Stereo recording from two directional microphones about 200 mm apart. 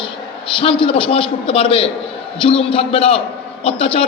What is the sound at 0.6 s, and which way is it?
A man's voice, 25° left (ahead or behind).